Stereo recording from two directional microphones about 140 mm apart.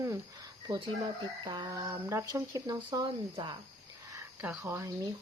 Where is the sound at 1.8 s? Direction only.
20° right (ahead or behind).